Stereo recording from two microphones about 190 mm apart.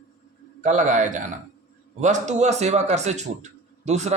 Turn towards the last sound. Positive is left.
turn(degrees=-35)  # may be behind; listen again after turning